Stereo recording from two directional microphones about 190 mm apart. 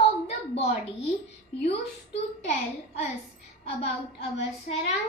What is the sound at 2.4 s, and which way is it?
Speech, 40° left (ahead or behind).